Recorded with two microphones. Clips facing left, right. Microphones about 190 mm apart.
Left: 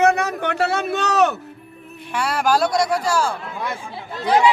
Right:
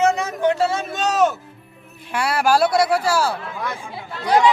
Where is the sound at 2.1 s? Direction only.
10° right (ahead or behind).